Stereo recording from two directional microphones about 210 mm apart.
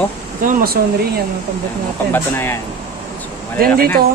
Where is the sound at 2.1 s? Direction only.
10° left (ahead or behind).